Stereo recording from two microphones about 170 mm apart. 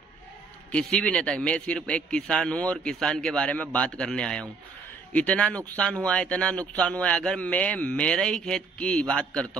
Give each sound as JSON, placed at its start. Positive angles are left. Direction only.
{"t": 0.7, "sound": "a man's voice", "side_deg": 5}